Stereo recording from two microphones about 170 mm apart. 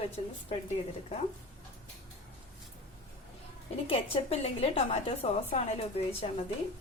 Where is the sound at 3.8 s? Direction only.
35° left (ahead or behind).